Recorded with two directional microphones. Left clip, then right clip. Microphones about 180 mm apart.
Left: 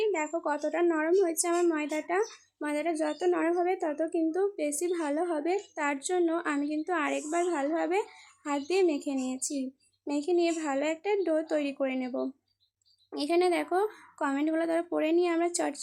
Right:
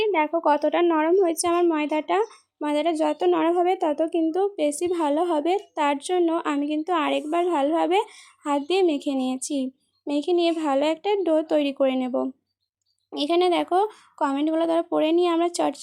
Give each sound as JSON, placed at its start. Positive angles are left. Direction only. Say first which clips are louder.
{"t": 0.0, "sound": "a woman's voice", "louder": "right 8 dB", "side_deg": -45}